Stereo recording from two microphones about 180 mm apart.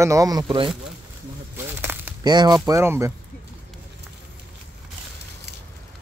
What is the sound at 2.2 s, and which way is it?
Speech, 25° right (ahead or behind).